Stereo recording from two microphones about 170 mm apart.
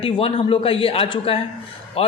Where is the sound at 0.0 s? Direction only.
30° left (ahead or behind).